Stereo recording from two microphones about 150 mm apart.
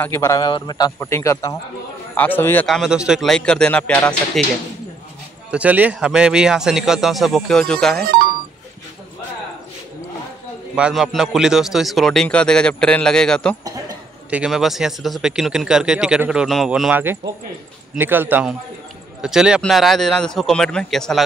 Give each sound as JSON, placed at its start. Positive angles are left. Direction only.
{"t": 0.0, "sound": "a man's voice", "side_deg": 15}
{"t": 0.5, "sound": "a man's voice", "side_deg": 30}
{"t": 2.6, "sound": "speech", "side_deg": 0}
{"t": 5.5, "sound": "speech", "side_deg": -10}
{"t": 10.8, "sound": "speech", "side_deg": -5}
{"t": 16.9, "sound": "speech", "side_deg": -15}